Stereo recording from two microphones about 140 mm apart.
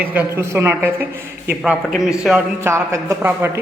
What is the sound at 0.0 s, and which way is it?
A man's voice, 10° right (ahead or behind).